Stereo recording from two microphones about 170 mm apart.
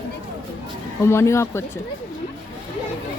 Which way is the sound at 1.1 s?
15° left (ahead or behind).